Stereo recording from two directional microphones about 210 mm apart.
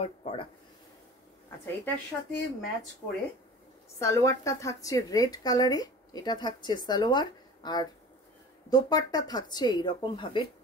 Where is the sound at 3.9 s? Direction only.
15° left (ahead or behind).